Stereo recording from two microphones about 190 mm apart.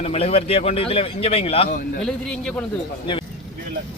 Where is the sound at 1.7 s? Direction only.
50° left (ahead or behind).